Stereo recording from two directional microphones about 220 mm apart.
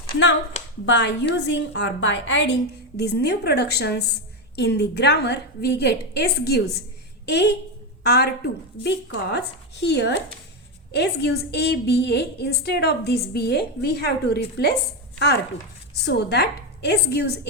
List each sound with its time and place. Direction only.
0.9 s a woman's voice: 55° left (ahead or behind)
16.0 s a woman's voice: 50° left (ahead or behind)